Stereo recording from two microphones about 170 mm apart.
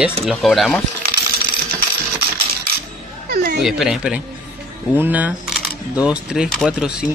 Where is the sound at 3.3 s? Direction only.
60° right (ahead or behind).